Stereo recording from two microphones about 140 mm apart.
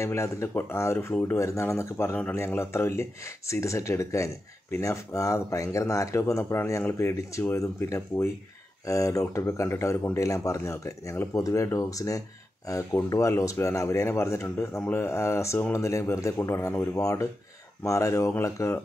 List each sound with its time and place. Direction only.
0.0 s speech: 20° left (ahead or behind)